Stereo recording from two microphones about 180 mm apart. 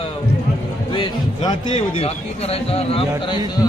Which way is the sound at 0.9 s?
25° left (ahead or behind).